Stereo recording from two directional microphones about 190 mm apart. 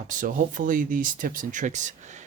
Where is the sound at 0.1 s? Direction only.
45° right (ahead or behind).